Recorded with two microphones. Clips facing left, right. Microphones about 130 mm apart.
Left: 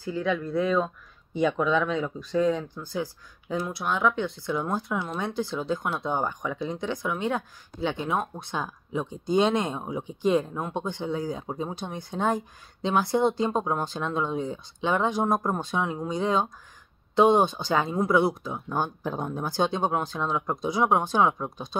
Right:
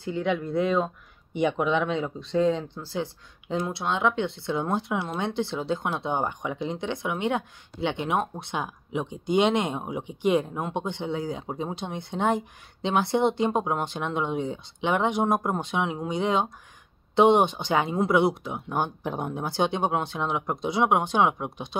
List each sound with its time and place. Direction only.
0.0 s speech: 25° right (ahead or behind)